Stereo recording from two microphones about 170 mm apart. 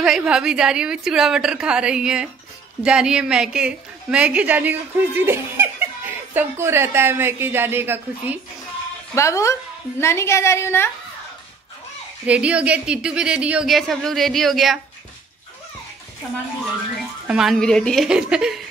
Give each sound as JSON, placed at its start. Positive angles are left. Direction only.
{"t": 0.0, "sound": "a woman's voice", "side_deg": -5}
{"t": 9.1, "sound": "a woman's voice", "side_deg": 15}
{"t": 12.3, "sound": "speech", "side_deg": -5}
{"t": 17.3, "sound": "speech", "side_deg": 0}